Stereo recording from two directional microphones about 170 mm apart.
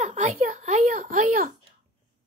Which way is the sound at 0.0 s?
50° right (ahead or behind).